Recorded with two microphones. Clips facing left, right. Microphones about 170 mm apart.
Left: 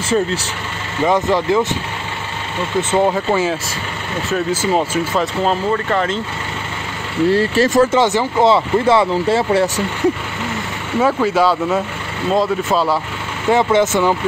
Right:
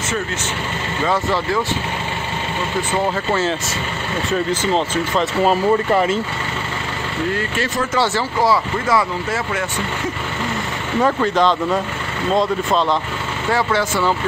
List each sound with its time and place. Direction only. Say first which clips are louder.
1.0 s speech: left 5 dB; 20° left (ahead or behind)
2.9 s speech: left 5 dB; 15° left (ahead or behind)
5.2 s speech: right 1 dB; 5° right (ahead or behind)
7.2 s speech: left 10 dB; 35° left (ahead or behind)
7.9 s speech: left 4 dB; 20° left (ahead or behind)
11.0 s speech: left 2 dB; 5° left (ahead or behind)
13.5 s speech: left 6 dB; 20° left (ahead or behind)